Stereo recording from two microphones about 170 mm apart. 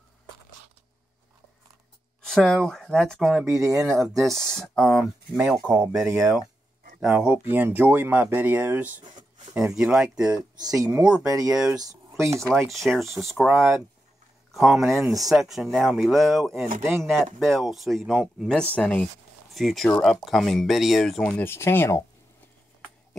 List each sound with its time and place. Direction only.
2.2 s speech: centre (ahead or behind)
10.6 s speech: 20° right (ahead or behind)
12.7 s speech: centre (ahead or behind)